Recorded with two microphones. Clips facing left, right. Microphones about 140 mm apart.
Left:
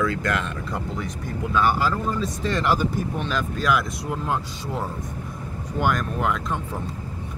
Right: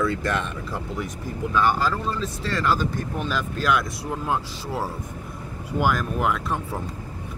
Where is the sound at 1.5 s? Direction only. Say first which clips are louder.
Even; 5° left (ahead or behind).